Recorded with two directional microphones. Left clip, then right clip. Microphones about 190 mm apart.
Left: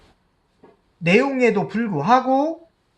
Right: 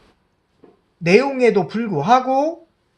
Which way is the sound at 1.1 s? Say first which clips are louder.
Right 3 dB; 35° right (ahead or behind).